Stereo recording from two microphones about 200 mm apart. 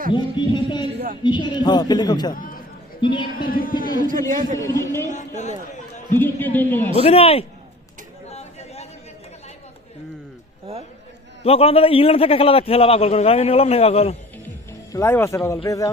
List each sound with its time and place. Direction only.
0.1 s a man's voice: 25° left (ahead or behind)
0.9 s speech: 45° right (ahead or behind)
1.2 s a man's voice: 20° left (ahead or behind)
2.3 s a sound: 45° left (ahead or behind)
3.0 s a man's voice: 25° left (ahead or behind)
3.5 s a man's voice: 45° left (ahead or behind)
4.5 s a man's voice: 15° left (ahead or behind)
5.0 s a man's voice: 35° left (ahead or behind)
6.1 s a man's voice: 10° left (ahead or behind)
7.0 s a man's voice: 30° left (ahead or behind)
8.3 s chatter: 30° left (ahead or behind)
11.4 s a man's voice: 30° left (ahead or behind)
14.4 s speech: 15° left (ahead or behind)